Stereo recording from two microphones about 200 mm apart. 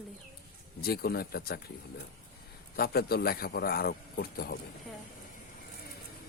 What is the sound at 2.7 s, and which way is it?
A man's voice, 50° left (ahead or behind).